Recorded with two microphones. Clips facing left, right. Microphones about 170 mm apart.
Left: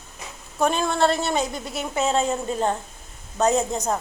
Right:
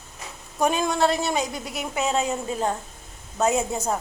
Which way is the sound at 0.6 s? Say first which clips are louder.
Left 1 dB; 10° right (ahead or behind).